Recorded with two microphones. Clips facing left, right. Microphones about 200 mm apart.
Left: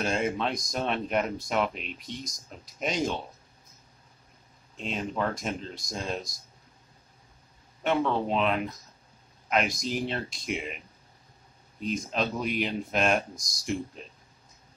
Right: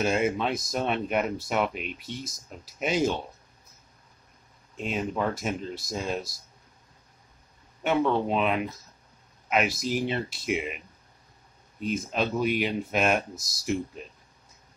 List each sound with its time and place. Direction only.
0.0 s speech: 5° right (ahead or behind)
4.7 s speech: 5° right (ahead or behind)
7.8 s speech: 5° right (ahead or behind)
11.8 s speech: 5° right (ahead or behind)